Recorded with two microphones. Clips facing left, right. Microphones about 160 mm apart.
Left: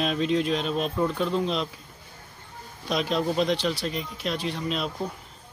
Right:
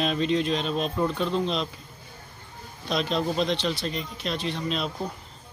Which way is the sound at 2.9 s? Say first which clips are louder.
Left 1 dB; 10° left (ahead or behind).